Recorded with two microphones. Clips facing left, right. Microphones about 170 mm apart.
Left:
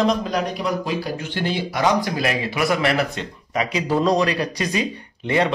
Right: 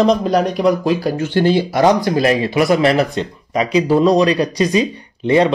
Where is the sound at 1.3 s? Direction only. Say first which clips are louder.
Right 11 dB; 35° right (ahead or behind).